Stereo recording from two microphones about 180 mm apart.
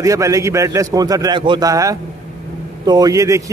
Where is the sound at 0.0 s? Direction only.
20° right (ahead or behind).